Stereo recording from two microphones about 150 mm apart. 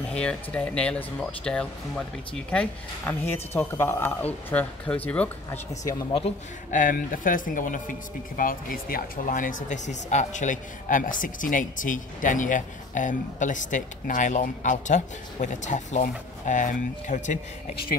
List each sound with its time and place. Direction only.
0.1 s speech: 5° left (ahead or behind)
6.7 s speech: 65° left (ahead or behind)